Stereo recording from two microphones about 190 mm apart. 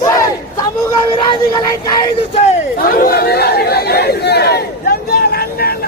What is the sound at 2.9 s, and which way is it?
Chatter, 50° left (ahead or behind).